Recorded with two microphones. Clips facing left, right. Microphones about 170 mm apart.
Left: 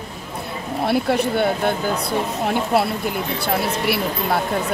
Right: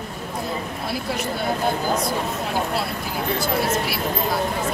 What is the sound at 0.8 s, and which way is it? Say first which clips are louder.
Speech: left 10 dB; 60° left (ahead or behind).